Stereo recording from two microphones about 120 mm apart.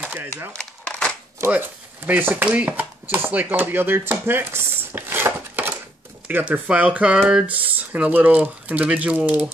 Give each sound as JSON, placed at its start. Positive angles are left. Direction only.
{"t": 0.0, "sound": "a sound", "side_deg": -15}
{"t": 0.5, "sound": "crumpling", "side_deg": 10}
{"t": 1.4, "sound": "speech", "side_deg": -15}